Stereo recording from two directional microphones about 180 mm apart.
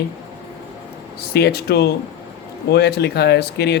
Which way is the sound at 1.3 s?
65° left (ahead or behind).